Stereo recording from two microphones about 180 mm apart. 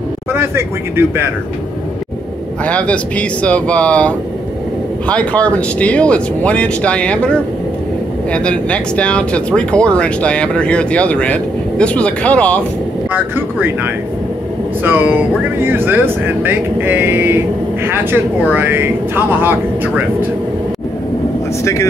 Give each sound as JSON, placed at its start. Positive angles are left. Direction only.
{"t": 0.3, "sound": "speech", "side_deg": -15}
{"t": 2.6, "sound": "speech", "side_deg": 5}
{"t": 14.8, "sound": "speech", "side_deg": -10}